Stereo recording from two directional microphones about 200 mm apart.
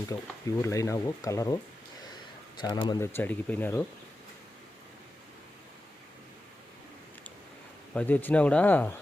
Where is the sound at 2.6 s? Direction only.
20° left (ahead or behind).